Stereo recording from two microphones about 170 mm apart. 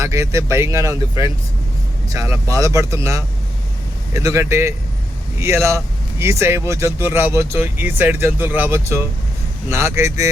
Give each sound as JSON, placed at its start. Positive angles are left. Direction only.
{"t": 0.0, "sound": "speech", "side_deg": -20}